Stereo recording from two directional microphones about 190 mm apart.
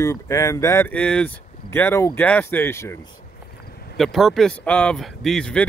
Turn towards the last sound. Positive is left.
turn(degrees=5)  # may be behind; listen again after turning